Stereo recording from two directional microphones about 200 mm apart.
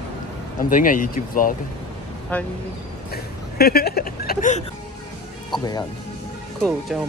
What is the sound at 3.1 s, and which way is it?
Speech, 50° left (ahead or behind).